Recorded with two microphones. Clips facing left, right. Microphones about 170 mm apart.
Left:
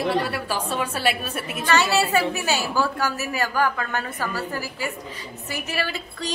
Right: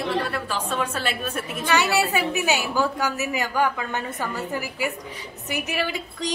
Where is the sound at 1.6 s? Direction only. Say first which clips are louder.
Left 1 dB; 10° right (ahead or behind).